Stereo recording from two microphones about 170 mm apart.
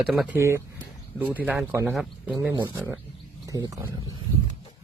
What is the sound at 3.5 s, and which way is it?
Speech, 20° right (ahead or behind).